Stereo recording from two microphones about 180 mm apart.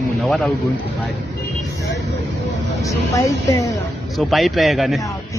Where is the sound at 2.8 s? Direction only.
15° left (ahead or behind).